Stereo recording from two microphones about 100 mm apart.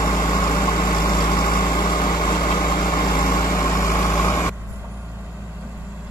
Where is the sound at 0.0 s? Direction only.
35° left (ahead or behind).